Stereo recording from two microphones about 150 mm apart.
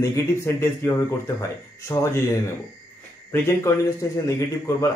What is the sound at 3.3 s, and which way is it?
Speech, 15° left (ahead or behind).